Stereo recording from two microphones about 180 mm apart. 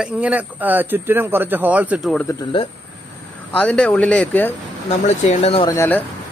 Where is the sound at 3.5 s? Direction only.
5° left (ahead or behind).